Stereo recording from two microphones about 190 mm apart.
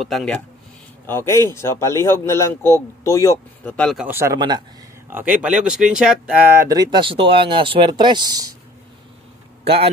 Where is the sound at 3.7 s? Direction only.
5° left (ahead or behind).